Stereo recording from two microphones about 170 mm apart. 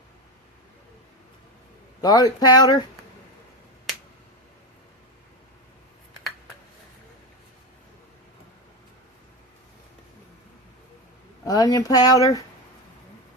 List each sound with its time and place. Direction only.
2.0 s speech: 20° left (ahead or behind)
11.4 s speech: 20° left (ahead or behind)